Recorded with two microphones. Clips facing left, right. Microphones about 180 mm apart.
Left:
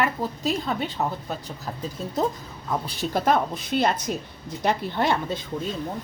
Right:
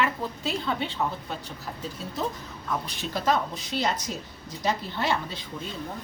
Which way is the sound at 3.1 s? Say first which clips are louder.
Left 3 dB; 55° left (ahead or behind).